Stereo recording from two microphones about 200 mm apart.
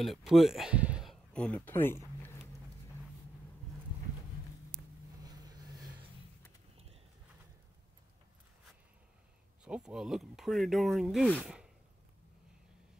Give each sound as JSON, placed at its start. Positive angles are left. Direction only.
{"t": 0.0, "sound": "speech", "side_deg": 0}
{"t": 5.2, "sound": "vehicle", "side_deg": -20}
{"t": 9.7, "sound": "speech", "side_deg": -5}